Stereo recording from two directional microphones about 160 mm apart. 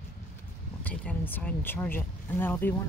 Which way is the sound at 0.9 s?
10° left (ahead or behind).